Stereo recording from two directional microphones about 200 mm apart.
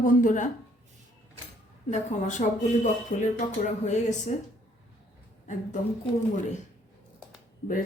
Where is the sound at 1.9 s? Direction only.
35° left (ahead or behind).